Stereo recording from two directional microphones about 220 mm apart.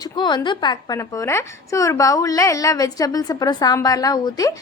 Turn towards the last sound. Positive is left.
turn(degrees=15)  # may be behind; listen again after turning